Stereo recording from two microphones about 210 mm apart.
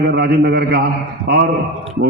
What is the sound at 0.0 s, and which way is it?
Speech, 50° right (ahead or behind).